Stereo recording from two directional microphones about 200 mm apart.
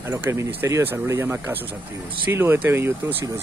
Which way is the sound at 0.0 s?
15° right (ahead or behind).